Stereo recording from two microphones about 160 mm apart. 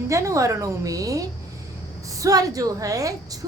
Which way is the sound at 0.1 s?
20° right (ahead or behind).